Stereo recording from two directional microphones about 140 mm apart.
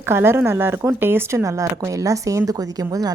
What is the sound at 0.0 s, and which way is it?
A woman's voice, 15° right (ahead or behind).